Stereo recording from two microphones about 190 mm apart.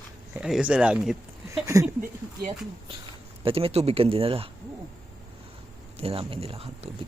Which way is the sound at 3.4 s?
30° right (ahead or behind).